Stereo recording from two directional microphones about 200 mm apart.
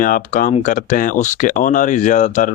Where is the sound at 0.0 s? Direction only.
45° left (ahead or behind).